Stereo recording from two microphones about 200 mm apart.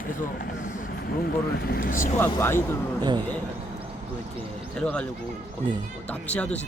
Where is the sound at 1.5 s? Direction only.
50° left (ahead or behind).